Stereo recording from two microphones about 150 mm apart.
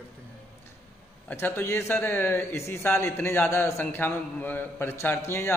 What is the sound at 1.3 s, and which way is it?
A man's voice, 15° left (ahead or behind).